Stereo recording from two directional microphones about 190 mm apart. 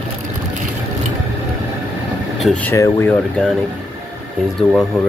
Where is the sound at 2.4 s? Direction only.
5° left (ahead or behind).